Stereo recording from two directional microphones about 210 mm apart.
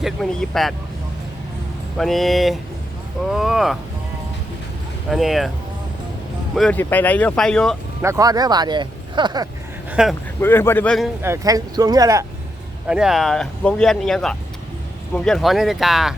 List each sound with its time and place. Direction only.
0.0 s speech: centre (ahead or behind)
2.0 s speech: centre (ahead or behind)
5.1 s speech: centre (ahead or behind)
6.6 s speech: 5° left (ahead or behind)
8.0 s speech: 15° right (ahead or behind)
9.9 s speech: 5° right (ahead or behind)
10.4 s speech: 10° left (ahead or behind)
11.2 s speech: 15° right (ahead or behind)
12.9 s speech: centre (ahead or behind)